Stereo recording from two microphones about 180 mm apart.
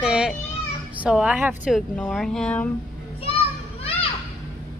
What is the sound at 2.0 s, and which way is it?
Speech, 5° left (ahead or behind).